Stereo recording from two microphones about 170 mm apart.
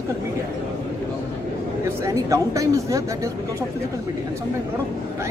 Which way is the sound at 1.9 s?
20° right (ahead or behind).